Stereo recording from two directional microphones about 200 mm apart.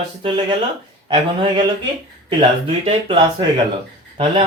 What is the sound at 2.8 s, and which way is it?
Speech, 25° right (ahead or behind).